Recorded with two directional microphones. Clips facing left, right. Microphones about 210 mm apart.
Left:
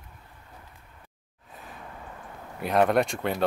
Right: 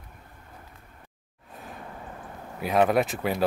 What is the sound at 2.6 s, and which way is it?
Speech, centre (ahead or behind).